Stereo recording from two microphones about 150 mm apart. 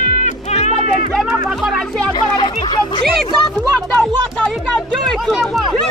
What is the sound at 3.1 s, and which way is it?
Speech, centre (ahead or behind).